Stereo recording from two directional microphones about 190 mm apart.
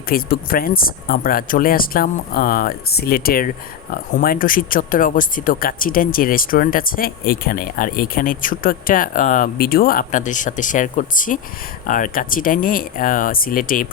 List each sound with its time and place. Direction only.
0.1 s speech: 50° left (ahead or behind)